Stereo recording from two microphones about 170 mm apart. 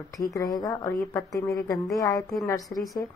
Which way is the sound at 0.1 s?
20° left (ahead or behind).